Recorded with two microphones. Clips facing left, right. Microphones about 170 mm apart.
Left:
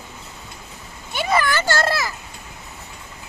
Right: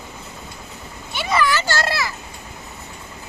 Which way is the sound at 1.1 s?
50° left (ahead or behind).